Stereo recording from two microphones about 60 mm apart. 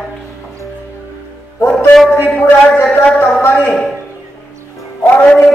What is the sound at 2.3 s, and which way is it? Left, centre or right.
Speech, left.